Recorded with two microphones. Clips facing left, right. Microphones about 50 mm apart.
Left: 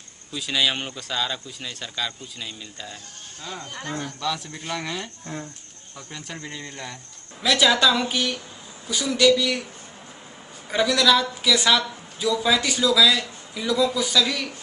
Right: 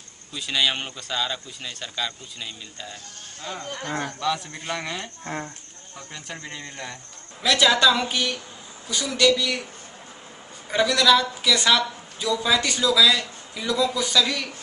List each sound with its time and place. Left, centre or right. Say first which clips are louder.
0.3 s a man's voice: even; centre
4.2 s speech: right 2 dB; centre
5.2 s speech: right 3 dB; right
5.9 s a man's voice: even; centre
10.7 s a man's voice: right 1 dB; centre